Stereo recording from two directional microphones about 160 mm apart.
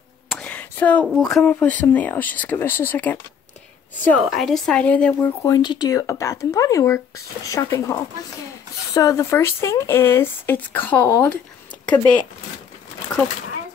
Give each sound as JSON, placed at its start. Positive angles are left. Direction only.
{"t": 0.3, "sound": "speech", "side_deg": 10}
{"t": 4.3, "sound": "speech", "side_deg": 0}
{"t": 5.4, "sound": "speech", "side_deg": 25}